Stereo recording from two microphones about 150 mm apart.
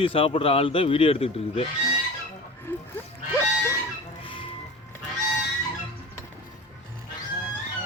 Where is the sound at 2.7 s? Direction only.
15° left (ahead or behind).